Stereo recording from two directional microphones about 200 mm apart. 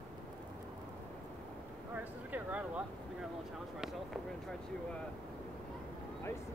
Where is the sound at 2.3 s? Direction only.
5° right (ahead or behind).